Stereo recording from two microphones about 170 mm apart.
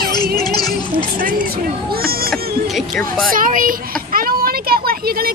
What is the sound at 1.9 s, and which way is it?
Speech, 60° right (ahead or behind).